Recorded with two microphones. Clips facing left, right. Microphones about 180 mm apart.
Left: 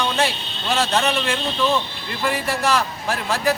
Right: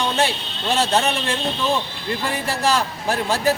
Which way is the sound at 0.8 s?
30° right (ahead or behind).